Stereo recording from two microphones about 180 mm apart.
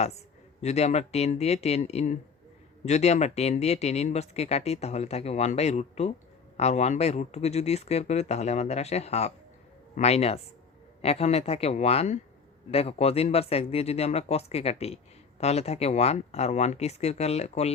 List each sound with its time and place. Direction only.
0.6 s speech: 35° left (ahead or behind)